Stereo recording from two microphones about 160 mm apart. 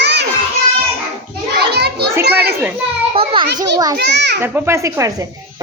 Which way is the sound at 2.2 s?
90° right.